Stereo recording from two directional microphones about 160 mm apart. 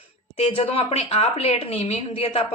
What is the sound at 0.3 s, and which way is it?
A woman's voice, 35° left (ahead or behind).